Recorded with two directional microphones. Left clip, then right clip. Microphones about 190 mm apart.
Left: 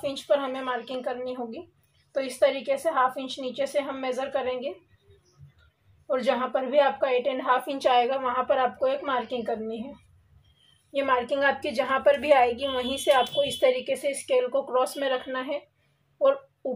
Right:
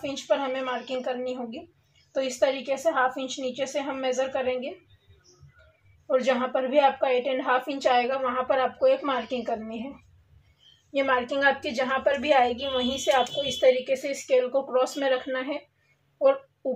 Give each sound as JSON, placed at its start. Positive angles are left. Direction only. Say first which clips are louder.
{"t": 0.0, "sound": "speech", "louder": "left 1 dB", "side_deg": 30}
{"t": 2.8, "sound": "a woman's voice", "louder": "right 2 dB", "side_deg": 30}
{"t": 6.0, "sound": "a woman's voice", "louder": "right 1 dB", "side_deg": 30}
{"t": 11.0, "sound": "a woman's voice", "louder": "even", "side_deg": 25}